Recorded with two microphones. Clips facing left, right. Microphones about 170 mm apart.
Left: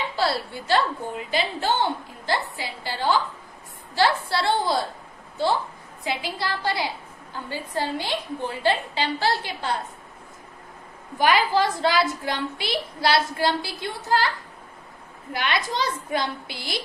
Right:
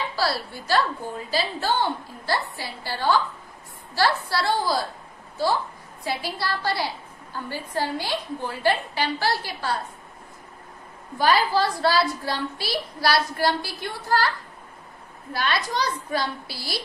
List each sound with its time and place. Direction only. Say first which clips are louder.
0.1 s a woman's voice: left 1 dB; 20° left (ahead or behind)
6.0 s a woman's voice: even; 20° left (ahead or behind)
11.1 s a woman's voice: even; 15° left (ahead or behind)
15.3 s a woman's voice: even; 20° left (ahead or behind)